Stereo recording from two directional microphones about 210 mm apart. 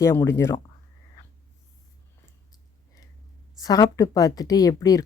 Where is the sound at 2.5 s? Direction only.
15° left (ahead or behind).